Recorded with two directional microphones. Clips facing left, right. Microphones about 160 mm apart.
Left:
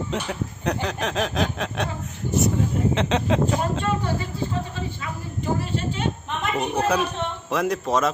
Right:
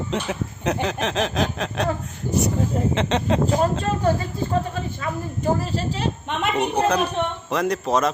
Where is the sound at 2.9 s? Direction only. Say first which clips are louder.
Right 1 dB; centre (ahead or behind).